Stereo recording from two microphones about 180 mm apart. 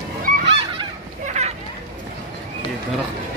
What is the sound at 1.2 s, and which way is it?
Children playing, 40° right (ahead or behind).